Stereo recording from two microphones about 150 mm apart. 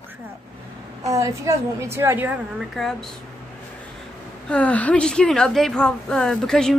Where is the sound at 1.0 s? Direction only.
20° right (ahead or behind).